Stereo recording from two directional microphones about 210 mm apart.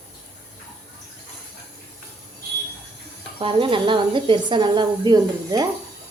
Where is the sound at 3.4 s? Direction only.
25° right (ahead or behind).